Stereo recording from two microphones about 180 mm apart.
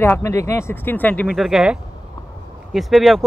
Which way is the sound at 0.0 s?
10° left (ahead or behind).